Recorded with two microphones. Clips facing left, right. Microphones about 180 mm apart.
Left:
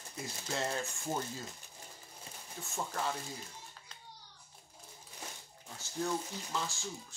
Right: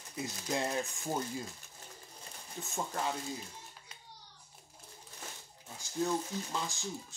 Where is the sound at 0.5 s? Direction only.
15° right (ahead or behind).